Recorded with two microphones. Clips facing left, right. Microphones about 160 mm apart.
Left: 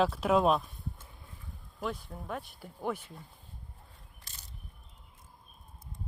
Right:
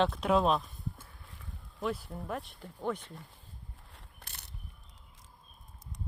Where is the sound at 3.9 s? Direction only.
70° right (ahead or behind).